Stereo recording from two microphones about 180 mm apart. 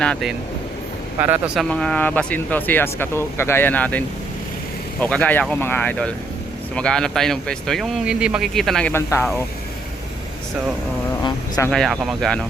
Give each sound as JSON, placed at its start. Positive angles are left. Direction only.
{"t": 0.0, "sound": "speech", "side_deg": 0}
{"t": 1.2, "sound": "speech", "side_deg": -10}
{"t": 1.6, "sound": "speech", "side_deg": 5}
{"t": 11.2, "sound": "speech", "side_deg": 20}
{"t": 11.7, "sound": "speech", "side_deg": 0}